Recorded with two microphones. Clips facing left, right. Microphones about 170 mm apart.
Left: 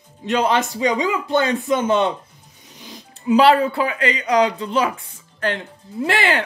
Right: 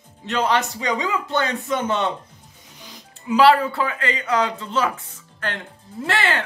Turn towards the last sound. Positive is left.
turn(degrees=15)  # may be behind; listen again after turning